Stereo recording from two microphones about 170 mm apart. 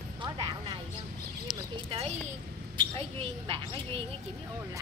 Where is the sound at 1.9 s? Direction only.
35° right (ahead or behind).